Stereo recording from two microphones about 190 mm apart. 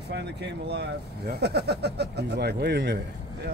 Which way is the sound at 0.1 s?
60° right (ahead or behind).